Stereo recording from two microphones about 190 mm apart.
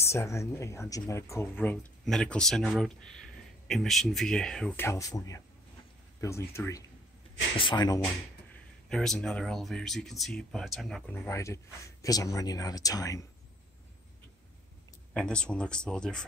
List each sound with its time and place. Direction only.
0.0 s speech: 15° left (ahead or behind)
4.8 s speech: 15° left (ahead or behind)
7.5 s speech: 25° left (ahead or behind)
8.8 s speech: centre (ahead or behind); by 13.3 s 20° left (ahead or behind)
15.1 s speech: 5° left (ahead or behind)